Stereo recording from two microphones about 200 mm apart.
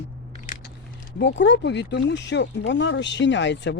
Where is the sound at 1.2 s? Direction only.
60° left (ahead or behind).